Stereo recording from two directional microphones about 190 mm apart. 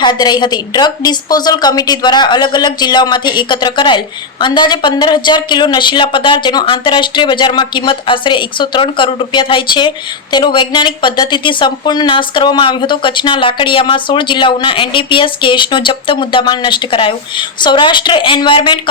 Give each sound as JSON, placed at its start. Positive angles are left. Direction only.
{"t": 0.0, "sound": "a woman's voice", "side_deg": 25}